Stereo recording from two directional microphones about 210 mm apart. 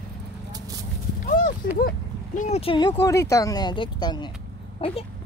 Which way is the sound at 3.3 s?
20° left (ahead or behind).